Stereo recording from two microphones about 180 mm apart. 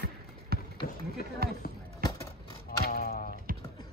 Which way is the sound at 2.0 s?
25° left (ahead or behind).